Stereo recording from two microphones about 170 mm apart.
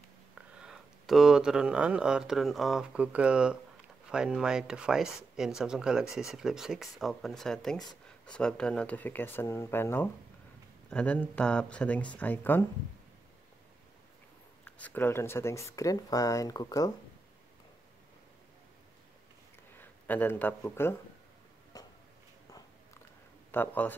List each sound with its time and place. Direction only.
0.6 s speech: 5° right (ahead or behind)
14.8 s speech: 10° left (ahead or behind)
19.8 s speech: 10° left (ahead or behind)
21.7 s a sound: 20° left (ahead or behind)
23.5 s speech: 10° left (ahead or behind)